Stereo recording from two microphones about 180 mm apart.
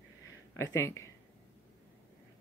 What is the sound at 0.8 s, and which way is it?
Speech, 15° left (ahead or behind).